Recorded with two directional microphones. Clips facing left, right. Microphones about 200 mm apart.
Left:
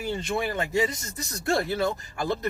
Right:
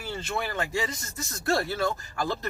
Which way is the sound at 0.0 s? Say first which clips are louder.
Left 4 dB; 20° left (ahead or behind).